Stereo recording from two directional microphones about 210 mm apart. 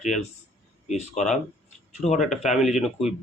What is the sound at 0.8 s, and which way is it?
Speech, 35° left (ahead or behind).